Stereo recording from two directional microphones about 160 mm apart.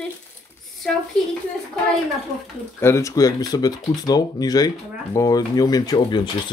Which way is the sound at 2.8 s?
20° left (ahead or behind).